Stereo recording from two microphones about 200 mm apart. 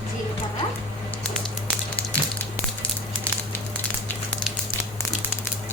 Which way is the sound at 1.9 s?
5° left (ahead or behind).